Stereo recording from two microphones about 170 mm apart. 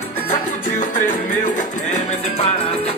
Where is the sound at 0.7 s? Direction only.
45° left (ahead or behind).